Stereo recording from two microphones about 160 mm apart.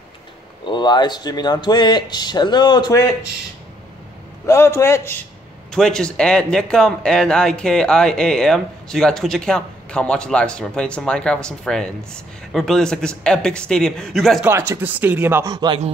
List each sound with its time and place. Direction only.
0.7 s speech: 30° left (ahead or behind)
4.5 s a man's voice: 20° left (ahead or behind)
5.7 s speech: 5° left (ahead or behind)
14.4 s speech: 15° right (ahead or behind)
15.5 s speech: 25° right (ahead or behind)